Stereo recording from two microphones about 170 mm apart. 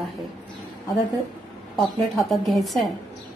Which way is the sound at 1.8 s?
Centre (ahead or behind).